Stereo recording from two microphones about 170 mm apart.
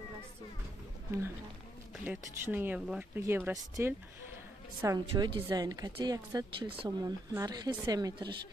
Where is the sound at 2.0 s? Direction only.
10° right (ahead or behind).